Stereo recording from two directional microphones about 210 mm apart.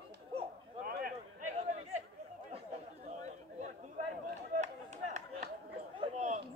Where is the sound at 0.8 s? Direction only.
45° right (ahead or behind).